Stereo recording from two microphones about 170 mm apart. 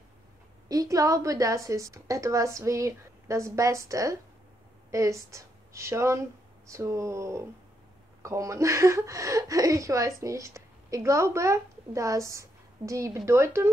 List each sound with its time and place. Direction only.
0.7 s a woman's voice: 20° right (ahead or behind)